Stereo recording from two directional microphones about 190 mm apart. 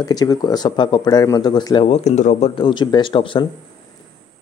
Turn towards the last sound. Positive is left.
turn(degrees=25)  # may be behind; listen again after turning